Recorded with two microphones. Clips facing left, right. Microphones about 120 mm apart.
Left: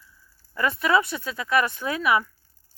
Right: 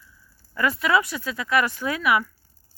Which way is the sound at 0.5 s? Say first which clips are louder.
Even; 25° left (ahead or behind).